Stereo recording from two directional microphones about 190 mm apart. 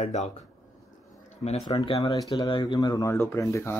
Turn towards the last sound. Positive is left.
turn(degrees=15)  # may be behind; listen again after turning